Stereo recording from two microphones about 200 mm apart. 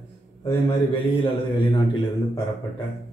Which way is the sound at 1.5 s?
20° left (ahead or behind).